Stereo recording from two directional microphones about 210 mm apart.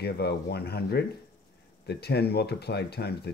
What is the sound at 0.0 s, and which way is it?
Speech, 50° left (ahead or behind).